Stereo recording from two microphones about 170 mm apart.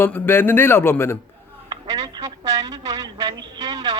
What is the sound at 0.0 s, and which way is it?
A man's voice, 15° left (ahead or behind).